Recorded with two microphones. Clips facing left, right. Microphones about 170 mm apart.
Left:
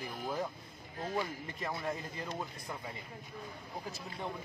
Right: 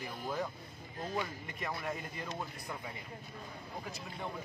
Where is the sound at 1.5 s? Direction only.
25° left (ahead or behind).